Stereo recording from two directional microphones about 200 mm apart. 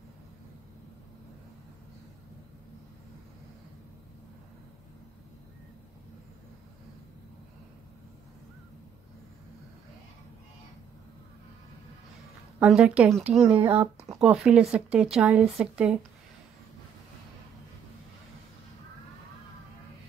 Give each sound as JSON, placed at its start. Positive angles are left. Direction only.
{"t": 12.5, "sound": "speech", "side_deg": -5}